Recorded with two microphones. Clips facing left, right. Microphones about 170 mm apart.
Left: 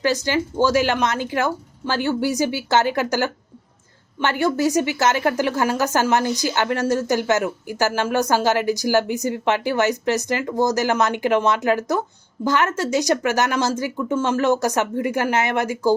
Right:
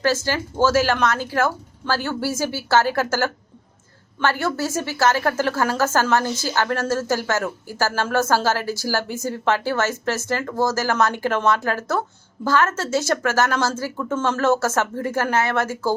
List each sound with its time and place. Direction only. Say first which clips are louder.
0.0 s a woman's voice: left 1 dB; 15° left (ahead or behind)